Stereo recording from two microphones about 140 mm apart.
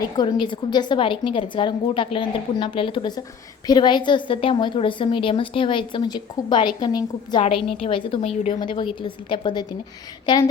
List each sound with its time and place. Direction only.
0.0 s a woman's voice: 30° left (ahead or behind)
7.4 s a woman's voice: 40° left (ahead or behind)